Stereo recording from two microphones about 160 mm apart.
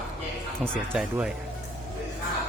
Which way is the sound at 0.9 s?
Centre (ahead or behind).